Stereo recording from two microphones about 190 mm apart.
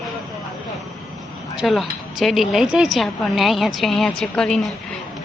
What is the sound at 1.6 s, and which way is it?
A woman's voice, centre (ahead or behind).